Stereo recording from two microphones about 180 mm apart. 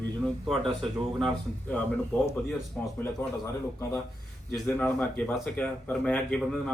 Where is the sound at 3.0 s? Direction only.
15° left (ahead or behind).